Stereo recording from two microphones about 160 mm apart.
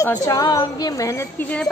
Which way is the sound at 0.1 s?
20° left (ahead or behind).